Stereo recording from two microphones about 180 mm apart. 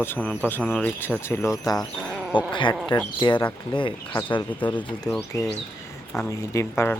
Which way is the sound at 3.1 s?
25° left (ahead or behind).